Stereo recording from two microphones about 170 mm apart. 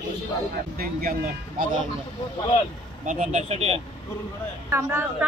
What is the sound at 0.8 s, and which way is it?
Speech, 60° right (ahead or behind).